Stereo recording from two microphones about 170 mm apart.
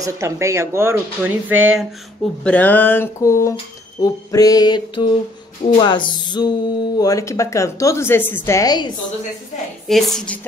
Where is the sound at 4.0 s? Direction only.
20° left (ahead or behind).